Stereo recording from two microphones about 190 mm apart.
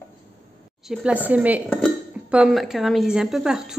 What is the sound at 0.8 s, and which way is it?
A woman's voice, 5° right (ahead or behind).